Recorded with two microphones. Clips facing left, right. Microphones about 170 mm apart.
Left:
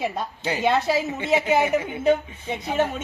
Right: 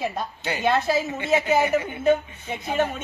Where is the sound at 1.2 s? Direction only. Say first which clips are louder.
Even; 20° left (ahead or behind).